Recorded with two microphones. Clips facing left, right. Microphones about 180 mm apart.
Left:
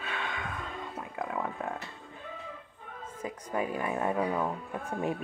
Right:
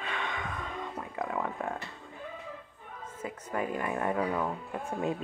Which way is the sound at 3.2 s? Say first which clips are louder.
Left 1 dB; 15° left (ahead or behind).